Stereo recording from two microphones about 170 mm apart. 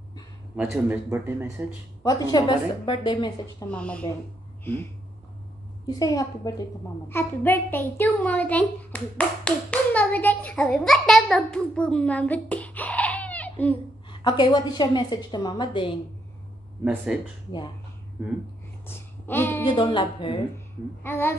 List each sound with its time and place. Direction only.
0.6 s a man's voice: 10° right (ahead or behind)
2.0 s a woman's voice: 20° left (ahead or behind)
3.7 s a woman's voice: 5° left (ahead or behind)
5.9 s a woman's voice: 20° left (ahead or behind)
14.1 s a woman's voice: 25° left (ahead or behind)
16.8 s speech: 5° right (ahead or behind)
18.9 s a sound: 15° left (ahead or behind)
19.6 s a woman's voice: 25° left (ahead or behind)
20.5 s a woman's voice: 15° left (ahead or behind)